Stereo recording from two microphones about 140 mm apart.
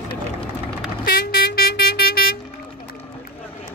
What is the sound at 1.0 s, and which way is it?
Vehicle, 90° left.